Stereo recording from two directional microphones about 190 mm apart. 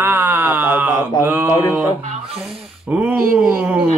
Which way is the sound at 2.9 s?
10° right (ahead or behind).